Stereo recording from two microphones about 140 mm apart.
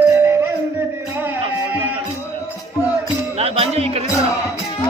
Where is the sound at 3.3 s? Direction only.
45° right (ahead or behind).